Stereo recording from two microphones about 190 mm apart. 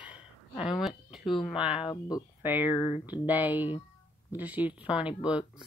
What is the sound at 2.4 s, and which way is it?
Speech, 10° right (ahead or behind).